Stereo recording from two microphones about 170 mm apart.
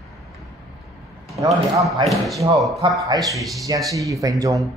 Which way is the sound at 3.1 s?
20° right (ahead or behind).